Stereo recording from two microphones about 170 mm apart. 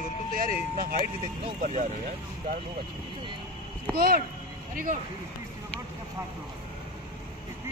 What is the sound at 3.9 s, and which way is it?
Speech, 60° right (ahead or behind).